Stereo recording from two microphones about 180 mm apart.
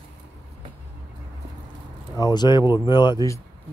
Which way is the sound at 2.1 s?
20° left (ahead or behind).